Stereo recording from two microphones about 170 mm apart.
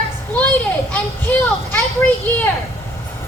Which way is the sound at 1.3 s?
10° left (ahead or behind).